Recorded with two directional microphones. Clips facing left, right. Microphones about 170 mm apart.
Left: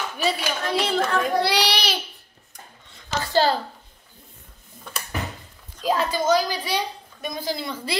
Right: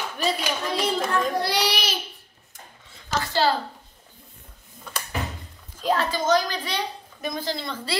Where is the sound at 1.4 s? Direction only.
75° left (ahead or behind).